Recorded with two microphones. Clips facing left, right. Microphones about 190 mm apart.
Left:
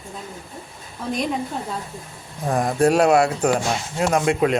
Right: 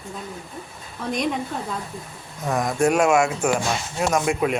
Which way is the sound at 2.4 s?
30° left (ahead or behind).